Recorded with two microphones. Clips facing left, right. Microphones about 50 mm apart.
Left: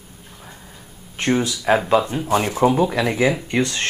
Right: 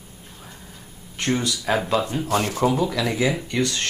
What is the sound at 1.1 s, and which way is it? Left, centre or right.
Speech, centre.